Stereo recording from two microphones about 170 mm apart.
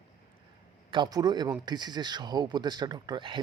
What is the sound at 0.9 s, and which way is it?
Speech, 25° right (ahead or behind).